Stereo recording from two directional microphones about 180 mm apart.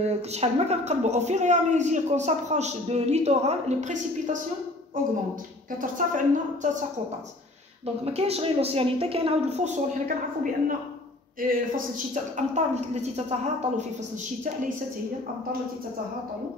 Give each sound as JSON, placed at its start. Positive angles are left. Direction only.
{"t": 0.0, "sound": "speech", "side_deg": -40}
{"t": 5.8, "sound": "a woman's voice", "side_deg": -45}
{"t": 7.8, "sound": "speech", "side_deg": -35}